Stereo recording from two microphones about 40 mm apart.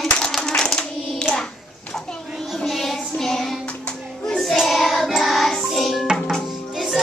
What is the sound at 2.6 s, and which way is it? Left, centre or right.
Child singing, centre.